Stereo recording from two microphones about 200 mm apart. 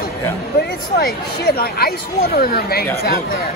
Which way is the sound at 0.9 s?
50° left (ahead or behind).